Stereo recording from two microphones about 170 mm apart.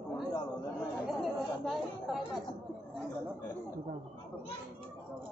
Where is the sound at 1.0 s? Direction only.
Centre (ahead or behind).